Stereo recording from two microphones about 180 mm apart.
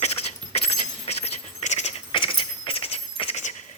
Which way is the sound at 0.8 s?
40° left (ahead or behind).